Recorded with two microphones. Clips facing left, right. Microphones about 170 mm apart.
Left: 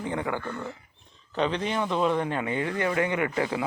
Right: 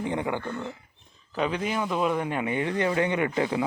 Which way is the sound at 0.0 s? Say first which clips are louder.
Right 1 dB; 20° right (ahead or behind).